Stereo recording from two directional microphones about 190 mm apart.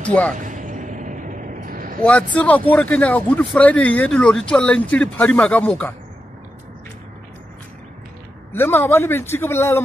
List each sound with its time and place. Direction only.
0.0 s speech: 5° left (ahead or behind)
0.3 s a sound: 40° right (ahead or behind)
2.0 s speech: 5° left (ahead or behind)
8.5 s speech: 10° left (ahead or behind)